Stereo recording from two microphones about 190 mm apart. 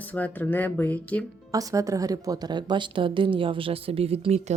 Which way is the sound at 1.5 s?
15° right (ahead or behind).